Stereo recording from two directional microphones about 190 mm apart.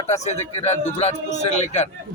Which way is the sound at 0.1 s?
35° left (ahead or behind).